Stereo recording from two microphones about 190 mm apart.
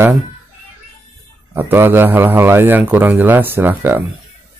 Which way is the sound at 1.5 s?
10° right (ahead or behind).